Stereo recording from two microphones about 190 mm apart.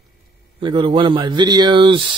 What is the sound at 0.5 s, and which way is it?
Speech, 25° right (ahead or behind).